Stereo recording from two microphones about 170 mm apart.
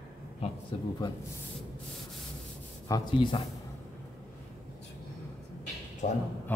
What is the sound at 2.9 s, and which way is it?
Speech, 30° left (ahead or behind).